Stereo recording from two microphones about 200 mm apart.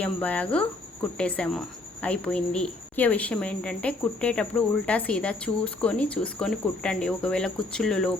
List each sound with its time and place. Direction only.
0.0 s a woman's voice: 5° left (ahead or behind)